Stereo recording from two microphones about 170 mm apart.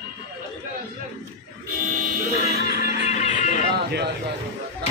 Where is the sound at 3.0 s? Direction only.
45° left (ahead or behind).